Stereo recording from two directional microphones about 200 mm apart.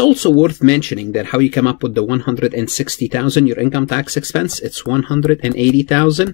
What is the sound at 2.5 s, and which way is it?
Speech, 5° left (ahead or behind).